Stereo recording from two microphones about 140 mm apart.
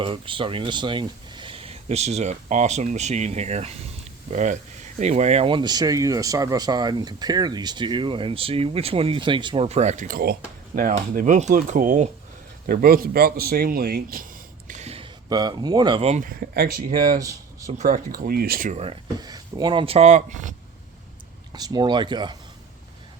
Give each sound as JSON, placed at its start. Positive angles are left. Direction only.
{"t": 0.0, "sound": "speech", "side_deg": -40}
{"t": 9.6, "sound": "speech", "side_deg": -55}
{"t": 10.7, "sound": "speech", "side_deg": -60}
{"t": 12.6, "sound": "speech", "side_deg": -90}
{"t": 14.7, "sound": "a sound", "side_deg": -50}
{"t": 15.3, "sound": "a man's voice", "side_deg": -30}
{"t": 16.0, "sound": "speech", "side_deg": -50}
{"t": 16.2, "sound": "speech", "side_deg": -90}
{"t": 17.2, "sound": "speech", "side_deg": -20}
{"t": 17.8, "sound": "speech", "side_deg": -80}
{"t": 19.2, "sound": "speech", "side_deg": -30}
{"t": 21.5, "sound": "speech", "side_deg": -30}